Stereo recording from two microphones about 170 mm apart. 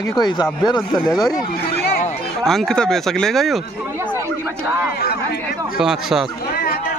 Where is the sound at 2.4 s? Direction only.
Centre (ahead or behind).